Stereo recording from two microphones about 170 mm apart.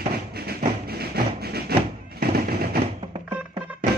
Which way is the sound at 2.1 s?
60° right (ahead or behind).